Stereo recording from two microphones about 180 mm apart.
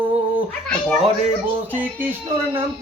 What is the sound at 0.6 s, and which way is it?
Speech, 5° left (ahead or behind).